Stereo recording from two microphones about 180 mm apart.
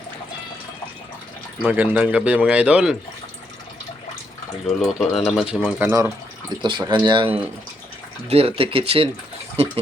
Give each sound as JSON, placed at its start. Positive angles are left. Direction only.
{"t": 1.6, "sound": "a man's voice", "side_deg": -10}
{"t": 4.6, "sound": "a man's voice", "side_deg": 0}
{"t": 6.6, "sound": "speech", "side_deg": -25}